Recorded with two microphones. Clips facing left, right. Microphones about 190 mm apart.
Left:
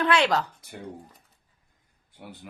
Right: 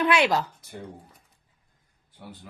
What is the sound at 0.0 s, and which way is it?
Speech, 10° right (ahead or behind).